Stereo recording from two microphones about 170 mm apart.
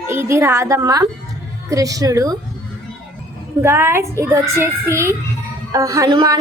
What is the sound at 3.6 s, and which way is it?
A woman's voice, 15° right (ahead or behind).